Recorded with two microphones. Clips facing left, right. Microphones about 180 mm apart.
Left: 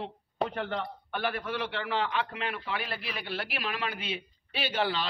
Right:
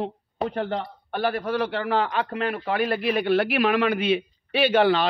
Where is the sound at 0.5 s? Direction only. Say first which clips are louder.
Right 6 dB; 35° right (ahead or behind); by 5.1 s 60° right (ahead or behind).